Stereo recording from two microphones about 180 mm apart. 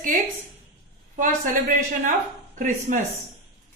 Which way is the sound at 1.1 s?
50° right (ahead or behind).